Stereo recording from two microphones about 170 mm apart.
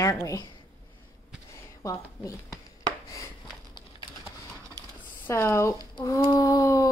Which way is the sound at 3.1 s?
20° left (ahead or behind).